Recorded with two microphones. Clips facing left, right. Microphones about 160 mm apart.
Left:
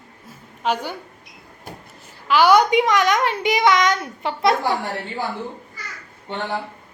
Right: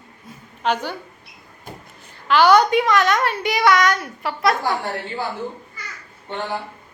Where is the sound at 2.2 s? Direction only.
10° left (ahead or behind); by 4.5 s 25° left (ahead or behind).